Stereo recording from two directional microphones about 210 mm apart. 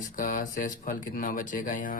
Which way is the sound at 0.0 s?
40° left (ahead or behind).